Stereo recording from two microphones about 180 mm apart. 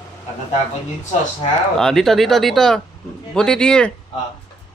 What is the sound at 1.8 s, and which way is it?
Speech, centre (ahead or behind).